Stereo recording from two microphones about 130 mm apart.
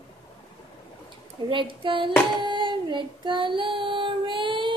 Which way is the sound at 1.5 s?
40° right (ahead or behind).